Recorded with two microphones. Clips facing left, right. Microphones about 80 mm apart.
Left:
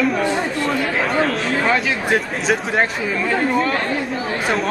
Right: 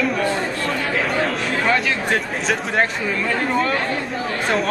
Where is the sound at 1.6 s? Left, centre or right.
Centre.